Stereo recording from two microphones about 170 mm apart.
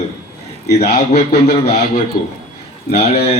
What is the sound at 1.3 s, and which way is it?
Speech, 35° left (ahead or behind).